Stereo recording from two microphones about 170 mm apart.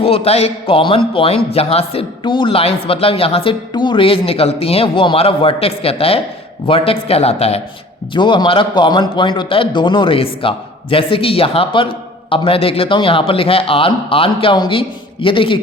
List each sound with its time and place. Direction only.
0.0 s a man's voice: 35° left (ahead or behind)